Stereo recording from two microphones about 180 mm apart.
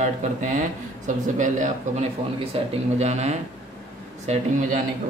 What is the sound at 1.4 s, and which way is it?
Speech, 45° right (ahead or behind).